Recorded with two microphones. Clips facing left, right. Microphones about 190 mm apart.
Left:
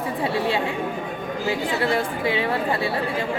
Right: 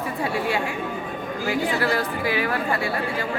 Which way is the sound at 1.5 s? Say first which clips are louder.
Even; 25° left (ahead or behind).